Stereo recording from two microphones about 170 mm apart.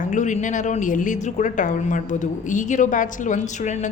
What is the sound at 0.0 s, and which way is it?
A woman's voice, 45° left (ahead or behind).